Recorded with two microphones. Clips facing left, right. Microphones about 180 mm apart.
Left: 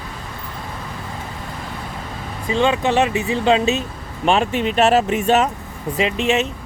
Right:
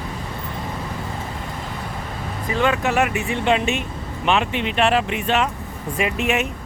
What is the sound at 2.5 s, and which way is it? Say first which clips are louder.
Speech: left 3 dB; 25° left (ahead or behind).